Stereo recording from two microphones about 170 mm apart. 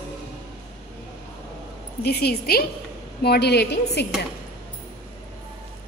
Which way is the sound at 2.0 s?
70° left (ahead or behind).